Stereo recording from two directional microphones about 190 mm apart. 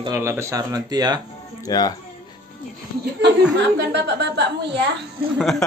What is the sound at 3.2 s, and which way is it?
A woman's voice, 60° right (ahead or behind).